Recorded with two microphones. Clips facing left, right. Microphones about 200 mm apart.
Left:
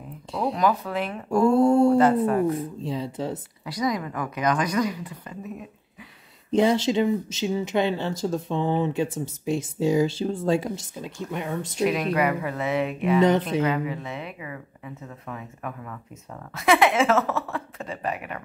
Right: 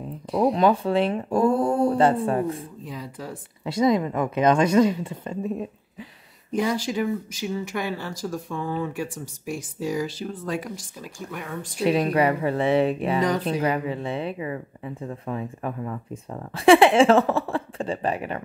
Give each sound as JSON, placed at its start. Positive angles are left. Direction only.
{"t": 0.5, "sound": "speech", "side_deg": -25}
{"t": 1.4, "sound": "speech", "side_deg": 25}
{"t": 2.0, "sound": "speech", "side_deg": -30}
{"t": 2.8, "sound": "speech", "side_deg": 25}
{"t": 3.6, "sound": "speech", "side_deg": -25}
{"t": 6.5, "sound": "speech", "side_deg": 25}
{"t": 11.8, "sound": "speech", "side_deg": -30}